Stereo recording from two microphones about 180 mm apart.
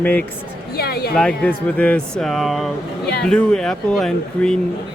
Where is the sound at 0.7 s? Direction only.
60° left (ahead or behind).